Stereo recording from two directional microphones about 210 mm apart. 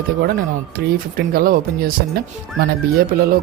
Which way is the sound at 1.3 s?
45° right (ahead or behind).